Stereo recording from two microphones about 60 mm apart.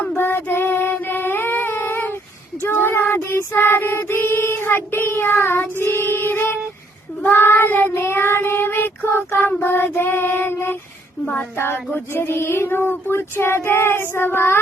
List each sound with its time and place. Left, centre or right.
0.2 s child singing: left